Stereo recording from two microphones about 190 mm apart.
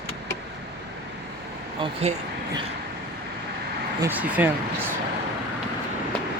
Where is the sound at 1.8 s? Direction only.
35° right (ahead or behind).